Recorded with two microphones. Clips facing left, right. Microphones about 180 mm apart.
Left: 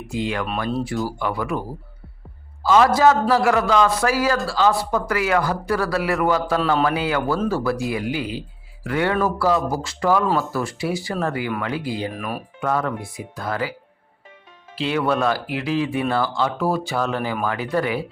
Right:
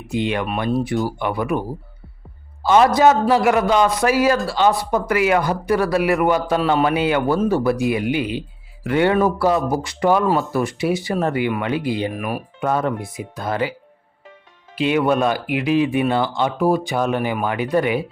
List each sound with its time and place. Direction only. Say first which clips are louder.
0.1 s speech: right 3 dB; 20° right (ahead or behind)
2.6 s speech: right 2 dB; 25° right (ahead or behind)
12.1 s speech: right 3 dB; 10° right (ahead or behind)
12.5 s speech: right 2 dB; 20° right (ahead or behind)
14.8 s speech: right 4 dB; 15° right (ahead or behind)